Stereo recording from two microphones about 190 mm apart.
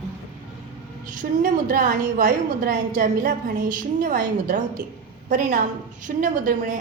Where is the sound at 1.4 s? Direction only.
45° right (ahead or behind).